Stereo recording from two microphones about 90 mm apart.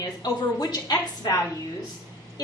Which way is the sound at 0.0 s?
45° left (ahead or behind).